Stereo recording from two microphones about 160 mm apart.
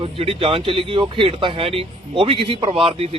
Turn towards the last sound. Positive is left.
turn(degrees=-35)  # may be behind; listen again after turning